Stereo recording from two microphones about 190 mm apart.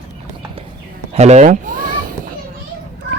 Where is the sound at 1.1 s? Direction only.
35° right (ahead or behind).